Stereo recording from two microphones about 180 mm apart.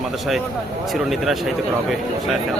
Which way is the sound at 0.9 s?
Centre (ahead or behind).